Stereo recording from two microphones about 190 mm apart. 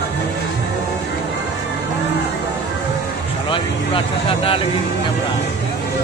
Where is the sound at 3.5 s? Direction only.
30° left (ahead or behind).